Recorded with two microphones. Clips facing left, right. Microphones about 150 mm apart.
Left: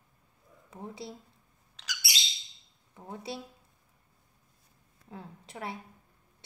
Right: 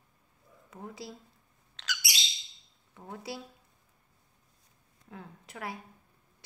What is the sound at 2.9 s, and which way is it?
Speech, 25° left (ahead or behind).